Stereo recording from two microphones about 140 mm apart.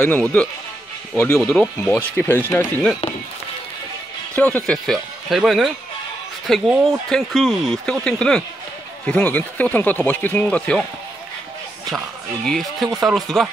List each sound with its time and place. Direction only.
1.1 s speech: 20° left (ahead or behind)
1.4 s speech: 5° left (ahead or behind)
4.4 s speech: 10° left (ahead or behind)
12.4 s speech: centre (ahead or behind)